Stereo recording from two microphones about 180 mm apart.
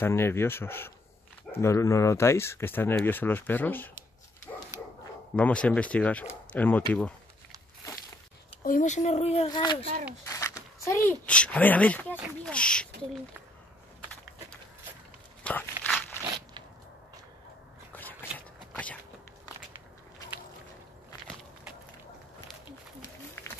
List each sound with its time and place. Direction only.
0.0 s speech: 15° left (ahead or behind)
5.3 s speech: 5° left (ahead or behind)
8.6 s speech: 45° left (ahead or behind)
9.5 s speech: 25° left (ahead or behind)
10.2 s a sound: 15° left (ahead or behind)
10.9 s speech: 15° left (ahead or behind)
15.4 s walk: 10° left (ahead or behind)
17.9 s a sound: 10° left (ahead or behind)